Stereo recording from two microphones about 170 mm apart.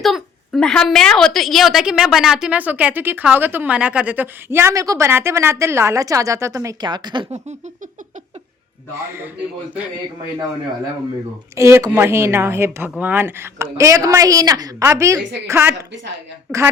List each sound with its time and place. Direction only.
0.0 s a woman's voice: centre (ahead or behind); by 7.3 s 25° right (ahead or behind)
9.0 s a woman's voice: 15° right (ahead or behind)
11.5 s a woman's voice: 15° right (ahead or behind)